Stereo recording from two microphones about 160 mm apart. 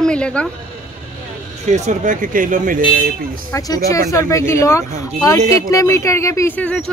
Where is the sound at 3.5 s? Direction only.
20° left (ahead or behind).